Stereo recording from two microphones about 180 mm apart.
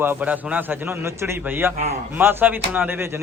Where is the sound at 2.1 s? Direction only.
10° right (ahead or behind).